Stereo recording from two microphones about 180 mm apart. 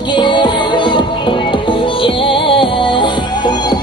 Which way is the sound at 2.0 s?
30° left (ahead or behind).